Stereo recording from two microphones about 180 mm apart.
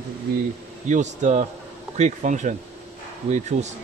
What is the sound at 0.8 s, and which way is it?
Speech, 40° right (ahead or behind).